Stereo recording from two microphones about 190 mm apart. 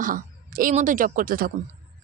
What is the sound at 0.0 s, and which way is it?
A woman's voice, 45° right (ahead or behind).